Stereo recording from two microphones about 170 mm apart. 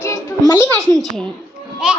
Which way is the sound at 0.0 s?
15° left (ahead or behind).